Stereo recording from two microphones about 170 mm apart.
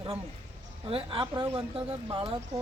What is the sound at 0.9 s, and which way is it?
Speech, 30° right (ahead or behind).